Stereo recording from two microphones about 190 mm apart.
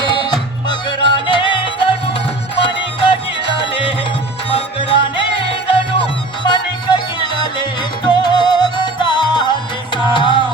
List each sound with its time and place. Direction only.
0.0 s music: 25° left (ahead or behind)
4.4 s music: 30° left (ahead or behind)